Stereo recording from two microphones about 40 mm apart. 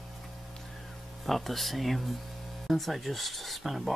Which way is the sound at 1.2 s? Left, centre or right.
Centre.